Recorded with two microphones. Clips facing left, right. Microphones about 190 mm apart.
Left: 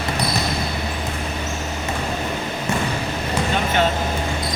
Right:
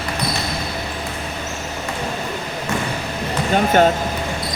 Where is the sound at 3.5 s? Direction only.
45° right (ahead or behind).